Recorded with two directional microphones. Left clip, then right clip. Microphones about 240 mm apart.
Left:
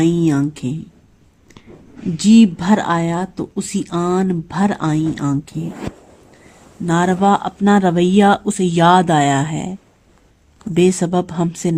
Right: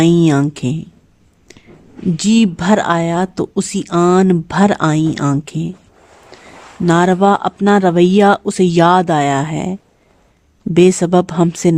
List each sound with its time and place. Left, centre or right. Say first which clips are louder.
0.0 s speech: right 4 dB; right
2.1 s speech: left 2 dB; right
6.8 s speech: right 4 dB; right
10.8 s speech: right 5 dB; right